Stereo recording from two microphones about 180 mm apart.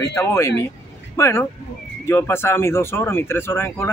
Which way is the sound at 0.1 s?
15° left (ahead or behind).